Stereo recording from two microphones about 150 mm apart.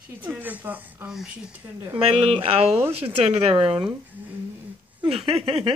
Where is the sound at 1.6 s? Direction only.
20° right (ahead or behind).